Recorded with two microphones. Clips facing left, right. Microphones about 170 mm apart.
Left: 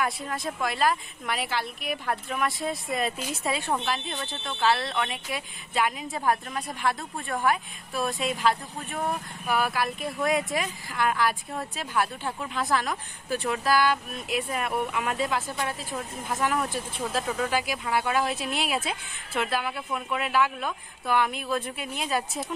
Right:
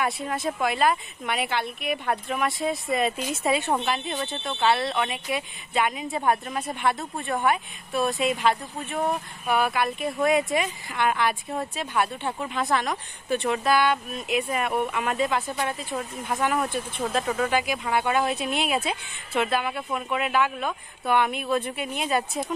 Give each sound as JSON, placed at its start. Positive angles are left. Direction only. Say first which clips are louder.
{"t": 0.0, "sound": "speech", "louder": "right 3 dB", "side_deg": -5}